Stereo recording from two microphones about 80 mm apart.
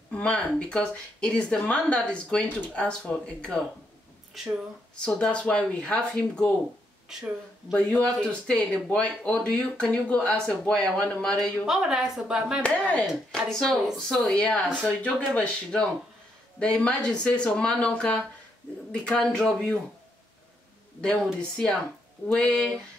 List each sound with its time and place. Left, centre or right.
0.1 s speech: centre
4.9 s speech: centre
7.1 s speech: centre
7.7 s speech: centre
11.6 s speech: centre
12.6 s speech: centre
13.3 s speech: centre
14.9 s speech: centre
21.4 s speech: centre